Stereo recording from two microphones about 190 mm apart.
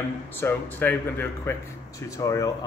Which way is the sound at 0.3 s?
10° left (ahead or behind).